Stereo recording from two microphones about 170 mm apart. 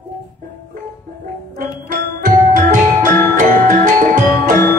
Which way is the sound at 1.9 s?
50° right (ahead or behind).